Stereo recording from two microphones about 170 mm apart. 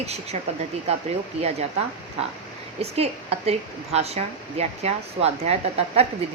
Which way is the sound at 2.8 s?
35° right (ahead or behind).